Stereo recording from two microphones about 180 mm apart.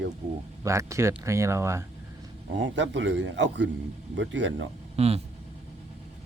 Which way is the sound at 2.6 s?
90° right.